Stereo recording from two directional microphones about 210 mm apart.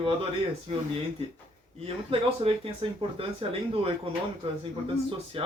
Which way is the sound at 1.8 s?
25° right (ahead or behind).